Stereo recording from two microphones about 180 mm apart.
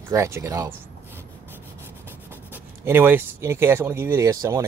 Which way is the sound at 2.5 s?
10° right (ahead or behind).